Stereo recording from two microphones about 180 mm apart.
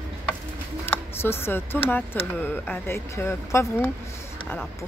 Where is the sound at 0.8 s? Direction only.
15° left (ahead or behind).